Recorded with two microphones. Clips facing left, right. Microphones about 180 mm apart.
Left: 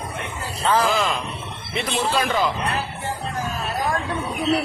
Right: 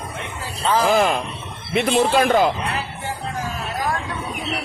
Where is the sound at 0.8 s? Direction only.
45° right (ahead or behind).